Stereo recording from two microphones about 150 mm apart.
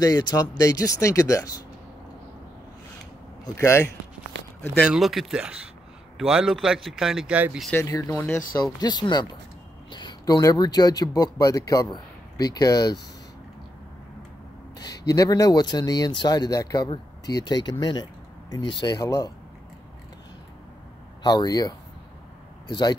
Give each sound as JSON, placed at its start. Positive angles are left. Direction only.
{"t": 0.0, "sound": "speech", "side_deg": 25}
{"t": 3.4, "sound": "speech", "side_deg": 20}
{"t": 4.8, "sound": "a man's voice", "side_deg": 0}
{"t": 7.7, "sound": "speech", "side_deg": 20}
{"t": 8.7, "sound": "speech", "side_deg": 30}
{"t": 14.8, "sound": "speech", "side_deg": 25}
{"t": 21.2, "sound": "speech", "side_deg": 25}